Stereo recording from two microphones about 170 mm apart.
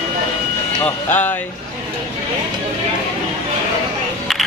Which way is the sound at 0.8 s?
10° left (ahead or behind).